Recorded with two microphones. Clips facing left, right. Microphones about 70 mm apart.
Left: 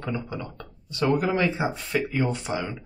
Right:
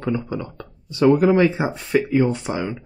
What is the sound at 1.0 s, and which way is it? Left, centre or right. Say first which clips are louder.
Speech: right 8 dB; centre.